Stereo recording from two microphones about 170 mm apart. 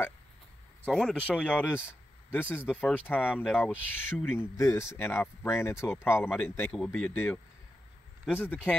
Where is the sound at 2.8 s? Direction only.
10° left (ahead or behind).